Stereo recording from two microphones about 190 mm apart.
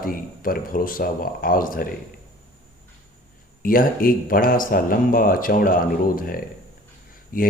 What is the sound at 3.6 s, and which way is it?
A man's voice, 50° left (ahead or behind).